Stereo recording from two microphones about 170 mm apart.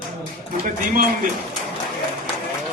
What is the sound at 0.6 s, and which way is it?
Speech, 55° right (ahead or behind).